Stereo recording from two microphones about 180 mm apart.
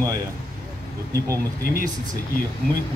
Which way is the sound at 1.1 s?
15° right (ahead or behind).